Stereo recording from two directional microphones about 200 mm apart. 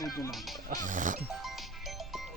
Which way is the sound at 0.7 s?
40° right (ahead or behind).